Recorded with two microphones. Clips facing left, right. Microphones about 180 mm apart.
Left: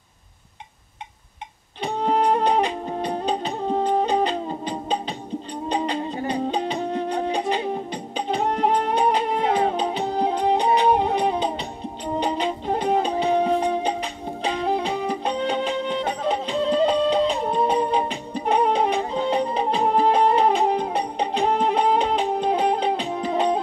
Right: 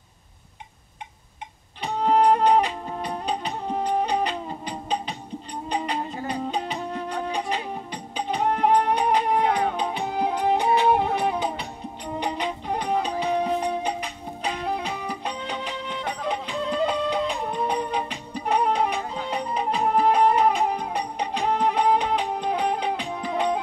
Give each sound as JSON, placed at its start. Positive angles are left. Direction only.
{"t": 1.8, "sound": "music", "side_deg": 30}